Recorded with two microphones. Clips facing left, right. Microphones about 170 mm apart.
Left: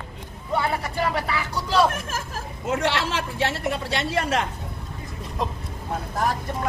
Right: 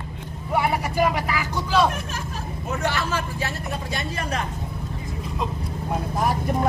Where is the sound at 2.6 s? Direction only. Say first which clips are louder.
Left 2 dB; 85° left.